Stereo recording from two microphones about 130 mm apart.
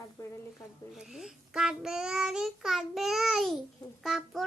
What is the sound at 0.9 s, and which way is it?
Child singing, 5° right (ahead or behind).